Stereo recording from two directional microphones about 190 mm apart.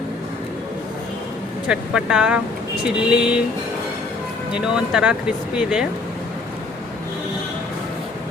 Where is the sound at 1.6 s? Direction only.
5° right (ahead or behind).